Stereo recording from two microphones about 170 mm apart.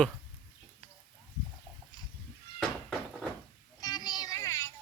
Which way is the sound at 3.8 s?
25° left (ahead or behind).